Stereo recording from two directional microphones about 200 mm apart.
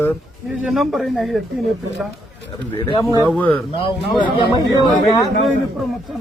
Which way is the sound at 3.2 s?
5° left (ahead or behind).